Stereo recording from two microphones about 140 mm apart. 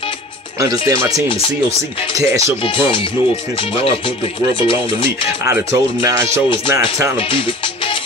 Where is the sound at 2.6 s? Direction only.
40° left (ahead or behind).